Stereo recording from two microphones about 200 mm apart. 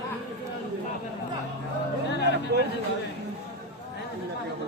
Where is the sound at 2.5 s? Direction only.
55° right (ahead or behind).